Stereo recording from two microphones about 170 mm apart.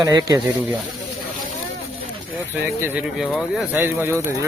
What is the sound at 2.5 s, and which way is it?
Speech, 15° right (ahead or behind).